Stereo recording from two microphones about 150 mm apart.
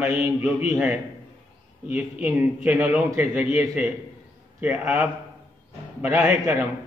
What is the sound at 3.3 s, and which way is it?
Speech, 45° left (ahead or behind).